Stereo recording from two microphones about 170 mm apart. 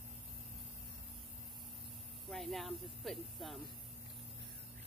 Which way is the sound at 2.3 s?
Centre (ahead or behind).